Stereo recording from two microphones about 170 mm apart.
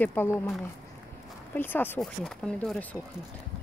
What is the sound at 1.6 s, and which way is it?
Speech, 10° left (ahead or behind).